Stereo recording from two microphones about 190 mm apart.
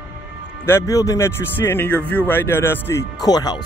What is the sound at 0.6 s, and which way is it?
Speech, 15° left (ahead or behind).